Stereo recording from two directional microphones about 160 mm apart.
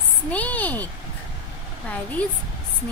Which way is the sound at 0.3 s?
10° left (ahead or behind).